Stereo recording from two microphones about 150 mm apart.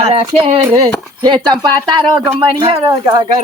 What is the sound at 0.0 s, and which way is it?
Speech, 40° right (ahead or behind).